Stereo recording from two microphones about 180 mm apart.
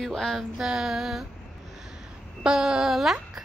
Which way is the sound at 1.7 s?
5° right (ahead or behind).